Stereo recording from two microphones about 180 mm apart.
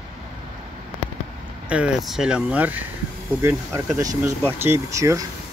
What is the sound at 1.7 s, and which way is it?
Speech, 5° right (ahead or behind).